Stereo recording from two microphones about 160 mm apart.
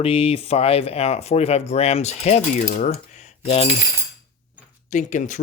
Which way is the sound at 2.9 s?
40° left (ahead or behind).